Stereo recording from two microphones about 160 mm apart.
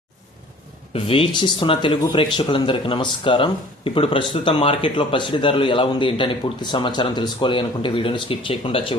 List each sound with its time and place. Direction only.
0.9 s speech: 35° left (ahead or behind)